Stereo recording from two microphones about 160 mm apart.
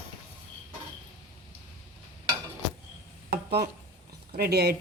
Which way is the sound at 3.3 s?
90° right.